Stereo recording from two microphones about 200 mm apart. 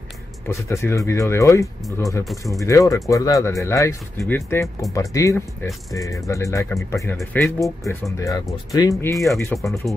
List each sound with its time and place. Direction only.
0.5 s speech: 15° left (ahead or behind)
2.2 s speech: centre (ahead or behind)
2.6 s speech: 15° left (ahead or behind)
9.1 s speech: centre (ahead or behind)